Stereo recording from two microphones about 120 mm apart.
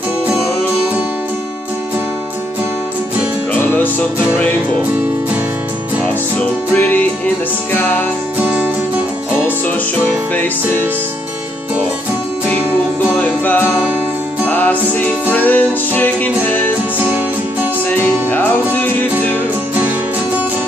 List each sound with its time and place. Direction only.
6.7 s music: 15° left (ahead or behind)
13.1 s music: 10° left (ahead or behind)
17.8 s music: 15° left (ahead or behind)